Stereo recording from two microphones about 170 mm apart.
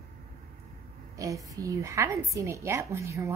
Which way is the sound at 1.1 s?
20° right (ahead or behind).